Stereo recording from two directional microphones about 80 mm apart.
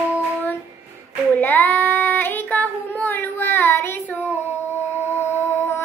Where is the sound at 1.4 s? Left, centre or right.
Left.